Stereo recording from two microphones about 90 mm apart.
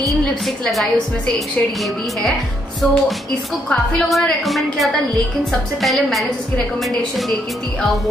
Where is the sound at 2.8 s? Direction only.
10° left (ahead or behind).